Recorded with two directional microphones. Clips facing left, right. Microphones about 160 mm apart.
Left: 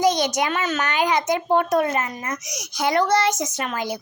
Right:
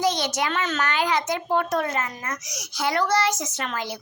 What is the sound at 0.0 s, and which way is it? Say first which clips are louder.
A child's voice: left 4 dB; 15° left (ahead or behind).